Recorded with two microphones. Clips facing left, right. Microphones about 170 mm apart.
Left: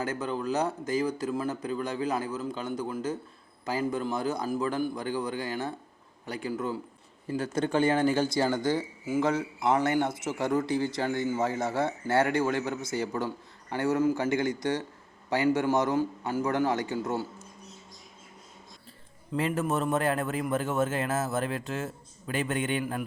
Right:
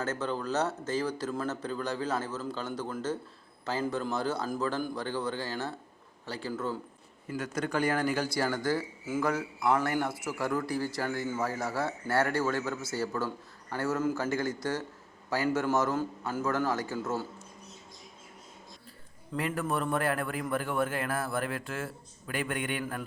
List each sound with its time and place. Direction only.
0.0 s a man's voice: 10° left (ahead or behind)
7.3 s a man's voice: 30° left (ahead or behind)
19.3 s speech: 20° left (ahead or behind)